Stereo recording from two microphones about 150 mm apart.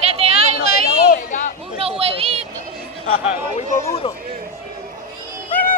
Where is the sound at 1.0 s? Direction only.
60° left (ahead or behind).